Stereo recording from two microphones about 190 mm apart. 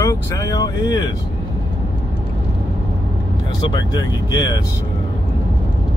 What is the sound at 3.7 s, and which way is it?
Speech, 20° left (ahead or behind).